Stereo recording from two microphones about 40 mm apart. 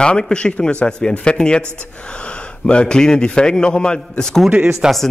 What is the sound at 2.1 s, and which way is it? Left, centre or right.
Gasp, left.